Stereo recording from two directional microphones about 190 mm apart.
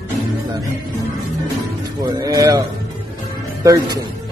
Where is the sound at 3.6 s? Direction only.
20° right (ahead or behind).